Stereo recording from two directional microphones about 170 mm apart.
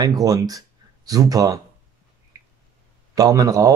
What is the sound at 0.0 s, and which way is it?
Speech, 20° right (ahead or behind).